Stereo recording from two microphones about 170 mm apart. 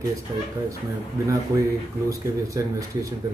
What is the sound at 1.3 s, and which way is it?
Speech, 20° right (ahead or behind).